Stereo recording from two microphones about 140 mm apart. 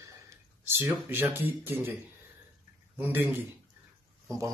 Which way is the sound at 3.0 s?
15° right (ahead or behind).